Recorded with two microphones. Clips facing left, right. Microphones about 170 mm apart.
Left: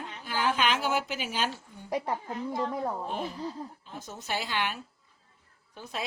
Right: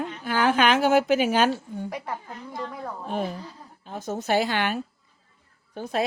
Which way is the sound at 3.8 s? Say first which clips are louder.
Right 11 dB; 55° right (ahead or behind).